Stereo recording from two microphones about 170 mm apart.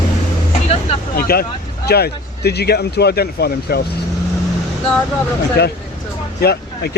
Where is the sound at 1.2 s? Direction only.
60° left (ahead or behind).